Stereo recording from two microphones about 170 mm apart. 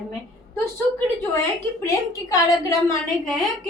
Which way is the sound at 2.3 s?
20° left (ahead or behind).